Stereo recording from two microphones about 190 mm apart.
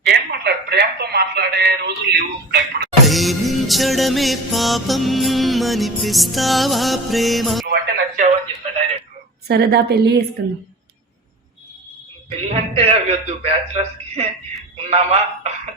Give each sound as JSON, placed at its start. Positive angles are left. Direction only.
{"t": 0.1, "sound": "a sound", "side_deg": -60}
{"t": 3.0, "sound": "music", "side_deg": 0}
{"t": 7.7, "sound": "radio", "side_deg": -50}
{"t": 9.5, "sound": "a woman's voice", "side_deg": -55}
{"t": 12.3, "sound": "a man's voice", "side_deg": -35}